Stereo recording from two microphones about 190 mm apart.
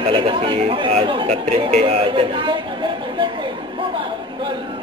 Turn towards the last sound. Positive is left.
turn(degrees=-25)  # may be behind; listen again after turning